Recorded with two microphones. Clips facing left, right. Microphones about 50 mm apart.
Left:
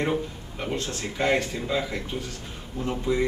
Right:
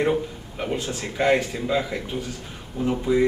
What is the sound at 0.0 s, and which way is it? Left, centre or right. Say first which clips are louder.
Speech: right 4 dB; centre.